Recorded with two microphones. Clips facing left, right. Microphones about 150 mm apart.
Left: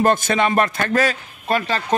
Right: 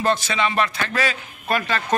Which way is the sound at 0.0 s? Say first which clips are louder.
Left 4 dB; 50° left (ahead or behind).